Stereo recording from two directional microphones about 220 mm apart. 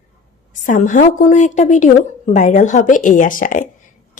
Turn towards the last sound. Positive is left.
turn(degrees=35)  # may be behind; listen again after turning